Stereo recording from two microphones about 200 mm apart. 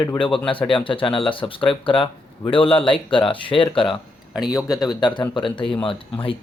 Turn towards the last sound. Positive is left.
turn(degrees=25)  # may be behind; listen again after turning